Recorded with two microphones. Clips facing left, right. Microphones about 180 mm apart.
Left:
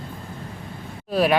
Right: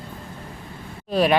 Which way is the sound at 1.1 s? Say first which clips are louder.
Even; 5° left (ahead or behind).